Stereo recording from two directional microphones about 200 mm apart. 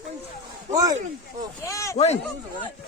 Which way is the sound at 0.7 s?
20° right (ahead or behind).